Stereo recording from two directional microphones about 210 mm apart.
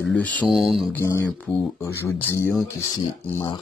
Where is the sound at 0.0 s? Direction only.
5° left (ahead or behind).